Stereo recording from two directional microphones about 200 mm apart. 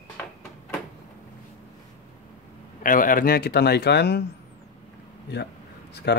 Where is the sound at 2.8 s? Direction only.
45° left (ahead or behind).